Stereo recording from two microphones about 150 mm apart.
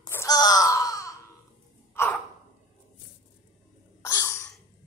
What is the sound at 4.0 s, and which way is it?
Sneeze, 20° left (ahead or behind).